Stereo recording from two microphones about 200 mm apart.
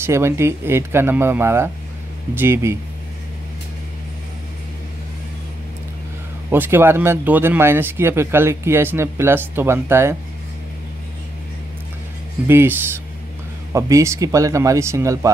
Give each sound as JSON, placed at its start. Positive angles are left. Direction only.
{"t": 0.0, "sound": "speech", "side_deg": -10}
{"t": 6.5, "sound": "speech", "side_deg": -10}
{"t": 12.4, "sound": "speech", "side_deg": -10}